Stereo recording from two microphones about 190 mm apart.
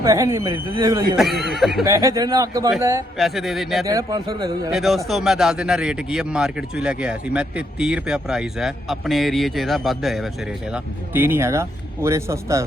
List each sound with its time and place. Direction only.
0.0 s a man's voice: 15° right (ahead or behind)
1.1 s a man's voice: centre (ahead or behind)
1.9 s speech: 15° right (ahead or behind)
3.2 s a man's voice: centre (ahead or behind)
3.8 s a man's voice: 20° right (ahead or behind)
4.7 s a man's voice: centre (ahead or behind)